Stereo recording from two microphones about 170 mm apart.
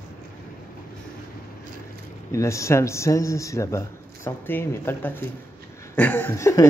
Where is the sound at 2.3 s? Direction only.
15° left (ahead or behind).